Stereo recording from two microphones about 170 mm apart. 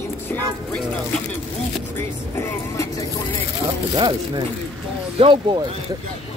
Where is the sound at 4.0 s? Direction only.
25° right (ahead or behind).